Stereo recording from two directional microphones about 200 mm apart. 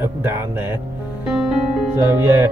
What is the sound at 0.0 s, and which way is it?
Speech, 10° right (ahead or behind).